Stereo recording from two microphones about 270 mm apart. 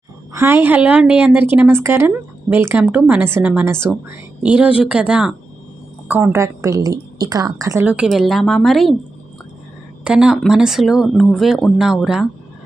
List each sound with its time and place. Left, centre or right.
0.3 s a woman's voice: centre
10.0 s speech: centre